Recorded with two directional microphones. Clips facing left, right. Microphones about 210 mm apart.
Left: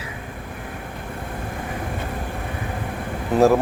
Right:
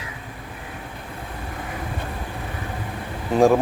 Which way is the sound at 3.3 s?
5° left (ahead or behind).